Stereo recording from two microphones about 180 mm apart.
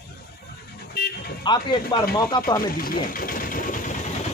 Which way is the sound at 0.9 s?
60° left (ahead or behind).